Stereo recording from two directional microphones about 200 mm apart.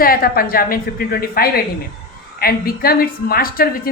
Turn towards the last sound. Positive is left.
turn(degrees=45)  # may be behind; listen again after turning